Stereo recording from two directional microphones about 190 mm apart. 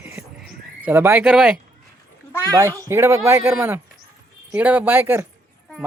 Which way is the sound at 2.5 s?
15° right (ahead or behind).